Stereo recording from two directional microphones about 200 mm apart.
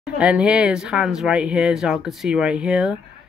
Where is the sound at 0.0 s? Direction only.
5° right (ahead or behind).